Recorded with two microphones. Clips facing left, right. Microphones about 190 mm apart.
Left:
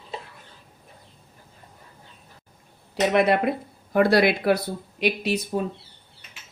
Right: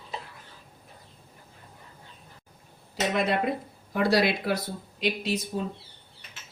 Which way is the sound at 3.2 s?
65° left (ahead or behind).